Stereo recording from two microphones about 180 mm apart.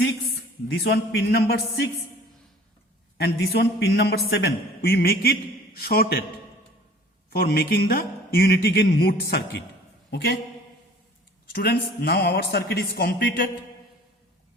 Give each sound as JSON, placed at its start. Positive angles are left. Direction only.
{"t": 0.7, "sound": "a man's voice", "side_deg": 65}
{"t": 3.2, "sound": "a man's voice", "side_deg": 65}
{"t": 7.3, "sound": "a man's voice", "side_deg": 65}
{"t": 11.5, "sound": "a man's voice", "side_deg": 60}